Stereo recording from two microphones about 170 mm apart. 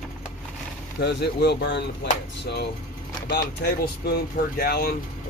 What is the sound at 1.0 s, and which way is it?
Speech, 75° left (ahead or behind).